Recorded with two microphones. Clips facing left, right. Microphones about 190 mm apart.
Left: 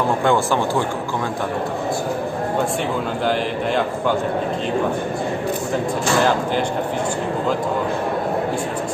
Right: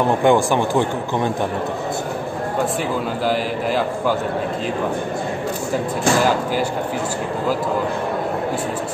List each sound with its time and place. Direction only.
0.0 s a man's voice: 15° right (ahead or behind)